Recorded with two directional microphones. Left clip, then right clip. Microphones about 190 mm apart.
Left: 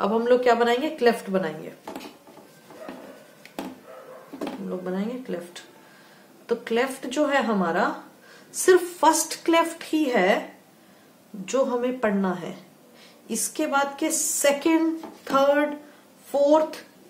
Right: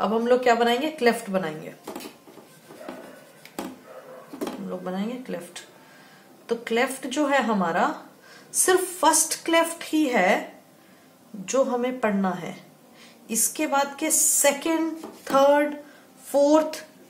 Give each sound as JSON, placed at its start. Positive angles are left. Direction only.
{"t": 0.0, "sound": "speech", "side_deg": 15}
{"t": 4.6, "sound": "speech", "side_deg": 15}
{"t": 11.4, "sound": "speech", "side_deg": 15}